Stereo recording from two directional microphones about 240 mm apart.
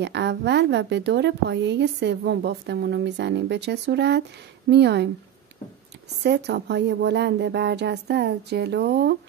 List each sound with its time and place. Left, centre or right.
0.0 s a woman's voice: right
6.2 s a woman's voice: right